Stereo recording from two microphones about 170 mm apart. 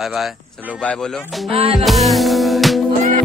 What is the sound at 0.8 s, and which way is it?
Speech, 5° left (ahead or behind).